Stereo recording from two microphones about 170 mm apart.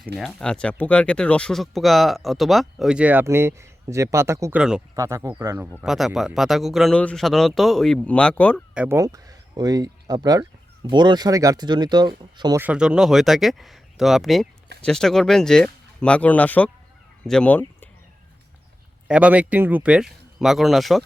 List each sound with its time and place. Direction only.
0.2 s speech: 5° left (ahead or behind); by 5.6 s 15° right (ahead or behind)
5.8 s speech: centre (ahead or behind)
8.7 s speech: 10° right (ahead or behind)
9.0 s speech: 20° right (ahead or behind)
12.5 s speech: 5° right (ahead or behind); by 17.8 s 10° left (ahead or behind)
19.0 s speech: 5° right (ahead or behind)